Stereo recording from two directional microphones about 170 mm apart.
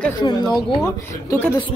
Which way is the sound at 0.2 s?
25° left (ahead or behind).